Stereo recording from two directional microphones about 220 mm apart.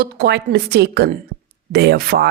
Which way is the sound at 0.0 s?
45° right (ahead or behind).